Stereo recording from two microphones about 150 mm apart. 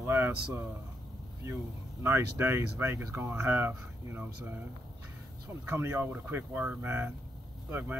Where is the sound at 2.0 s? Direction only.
15° right (ahead or behind).